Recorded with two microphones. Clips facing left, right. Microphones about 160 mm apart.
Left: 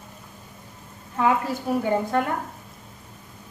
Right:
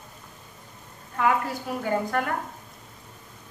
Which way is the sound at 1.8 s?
20° left (ahead or behind).